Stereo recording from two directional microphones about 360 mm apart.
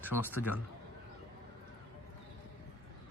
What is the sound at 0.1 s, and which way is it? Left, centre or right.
Speech, left.